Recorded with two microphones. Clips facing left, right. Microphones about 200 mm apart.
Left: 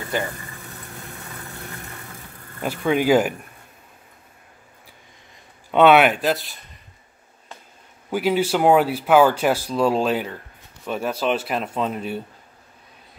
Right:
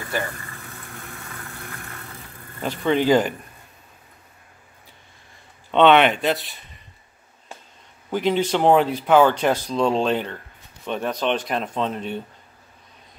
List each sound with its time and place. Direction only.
0.1 s speech: 20° left (ahead or behind)
2.6 s speech: 10° left (ahead or behind)
5.7 s speech: 10° left (ahead or behind)
8.1 s speech: 10° left (ahead or behind)